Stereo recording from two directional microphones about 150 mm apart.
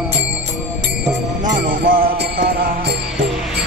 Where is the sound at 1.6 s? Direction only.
70° right (ahead or behind).